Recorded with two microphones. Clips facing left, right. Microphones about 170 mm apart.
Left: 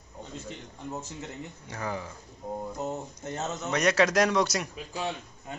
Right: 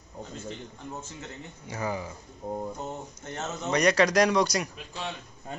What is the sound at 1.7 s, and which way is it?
Speech, 5° right (ahead or behind).